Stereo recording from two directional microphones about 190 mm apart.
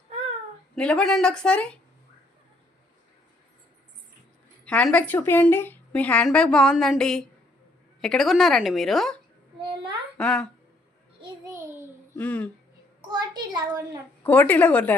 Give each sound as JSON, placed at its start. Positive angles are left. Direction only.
{"t": 0.8, "sound": "a woman's voice", "side_deg": 5}
{"t": 4.6, "sound": "a woman's voice", "side_deg": 5}
{"t": 9.6, "sound": "a sound", "side_deg": -25}
{"t": 10.2, "sound": "a woman's voice", "side_deg": 5}
{"t": 12.1, "sound": "speech", "side_deg": 10}
{"t": 13.1, "sound": "a child's voice", "side_deg": -25}
{"t": 14.3, "sound": "a woman's voice", "side_deg": 10}